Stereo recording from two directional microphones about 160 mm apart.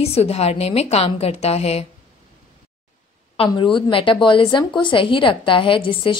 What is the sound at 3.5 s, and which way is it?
Speech, 30° left (ahead or behind).